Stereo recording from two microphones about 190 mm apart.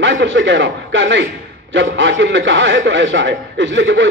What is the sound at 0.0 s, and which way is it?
A man's voice, 70° right (ahead or behind).